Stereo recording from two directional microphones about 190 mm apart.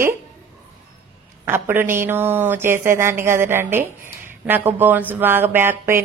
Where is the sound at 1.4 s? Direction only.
10° right (ahead or behind).